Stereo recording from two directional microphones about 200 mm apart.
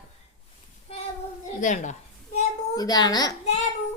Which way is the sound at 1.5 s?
40° left (ahead or behind).